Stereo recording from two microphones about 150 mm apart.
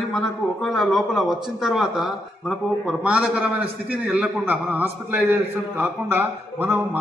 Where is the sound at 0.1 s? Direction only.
Centre (ahead or behind).